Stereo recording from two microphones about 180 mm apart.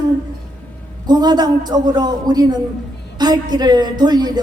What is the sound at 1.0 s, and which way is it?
A woman's voice, 20° right (ahead or behind).